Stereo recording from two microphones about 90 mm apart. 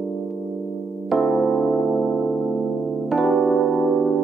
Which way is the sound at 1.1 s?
Centre (ahead or behind).